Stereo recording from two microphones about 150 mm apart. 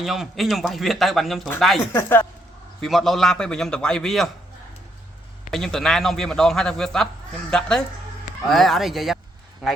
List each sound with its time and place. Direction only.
0.0 s a man's voice: centre (ahead or behind)
1.9 s speech: 15° left (ahead or behind)
2.8 s a man's voice: centre (ahead or behind)
5.5 s a man's voice: centre (ahead or behind)